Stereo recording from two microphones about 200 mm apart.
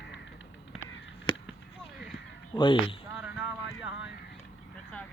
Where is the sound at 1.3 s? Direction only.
25° left (ahead or behind).